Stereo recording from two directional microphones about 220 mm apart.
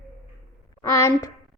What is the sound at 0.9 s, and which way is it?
Speech, 15° left (ahead or behind).